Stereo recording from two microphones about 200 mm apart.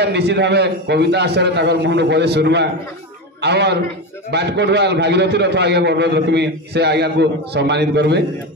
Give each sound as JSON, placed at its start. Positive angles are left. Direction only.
{"t": 0.0, "sound": "a man's voice", "side_deg": -55}